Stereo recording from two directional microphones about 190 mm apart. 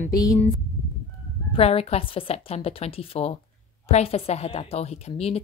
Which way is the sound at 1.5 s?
30° left (ahead or behind).